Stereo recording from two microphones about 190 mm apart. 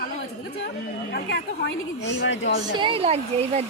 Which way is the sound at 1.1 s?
65° left (ahead or behind).